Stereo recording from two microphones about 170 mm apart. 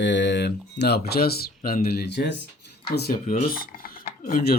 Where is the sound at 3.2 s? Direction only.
45° left (ahead or behind).